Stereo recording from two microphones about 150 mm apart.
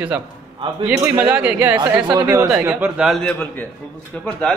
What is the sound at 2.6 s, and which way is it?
Speech, 10° right (ahead or behind).